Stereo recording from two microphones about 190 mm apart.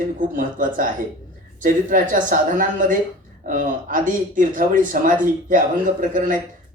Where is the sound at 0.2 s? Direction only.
45° right (ahead or behind).